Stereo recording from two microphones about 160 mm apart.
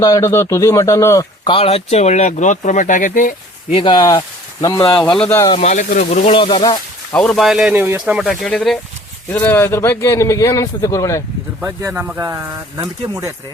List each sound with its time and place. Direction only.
0.0 s speech: 20° left (ahead or behind)
1.5 s speech: 35° left (ahead or behind); by 3.3 s 55° left (ahead or behind)
3.7 s speech: 30° left (ahead or behind)
4.9 s speech: 5° left (ahead or behind)
5.5 s speech: 50° left (ahead or behind)
6.2 s speech: 35° left (ahead or behind)
7.1 s speech: 5° left (ahead or behind)
9.3 s speech: 15° left (ahead or behind)
11.6 s speech: 15° right (ahead or behind)